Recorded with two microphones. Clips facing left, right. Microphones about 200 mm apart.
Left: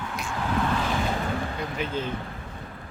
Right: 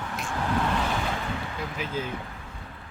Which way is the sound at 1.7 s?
5° right (ahead or behind).